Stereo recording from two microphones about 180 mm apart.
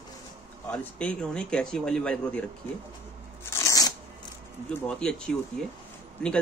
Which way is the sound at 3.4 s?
15° left (ahead or behind).